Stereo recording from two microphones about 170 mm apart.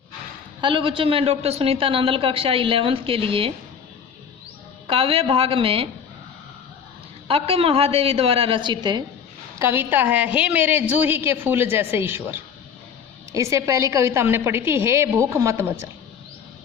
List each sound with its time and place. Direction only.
0.6 s a woman's voice: 30° right (ahead or behind)
4.9 s a woman's voice: 30° right (ahead or behind)
7.3 s a woman's voice: 35° right (ahead or behind)
9.6 s a woman's voice: 15° right (ahead or behind)